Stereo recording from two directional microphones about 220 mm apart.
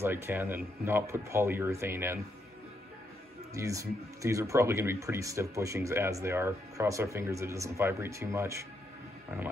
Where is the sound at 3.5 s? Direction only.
15° right (ahead or behind).